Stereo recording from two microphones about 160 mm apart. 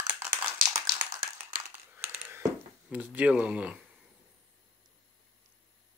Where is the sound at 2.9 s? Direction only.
10° right (ahead or behind).